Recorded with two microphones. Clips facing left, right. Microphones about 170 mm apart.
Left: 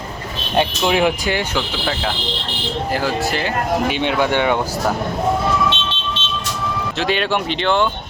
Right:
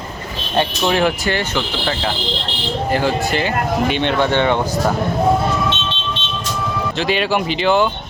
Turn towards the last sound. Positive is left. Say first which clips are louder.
# right 2 dB
turn(degrees=-5)  # may be behind; listen again after turning